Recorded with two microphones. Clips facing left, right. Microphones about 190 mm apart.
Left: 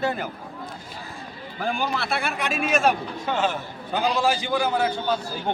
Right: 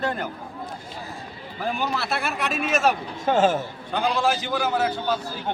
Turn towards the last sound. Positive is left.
turn(degrees=-5)  # may be behind; listen again after turning